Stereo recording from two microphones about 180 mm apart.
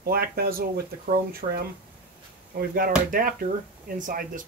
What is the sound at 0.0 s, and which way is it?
Speech, 60° right (ahead or behind).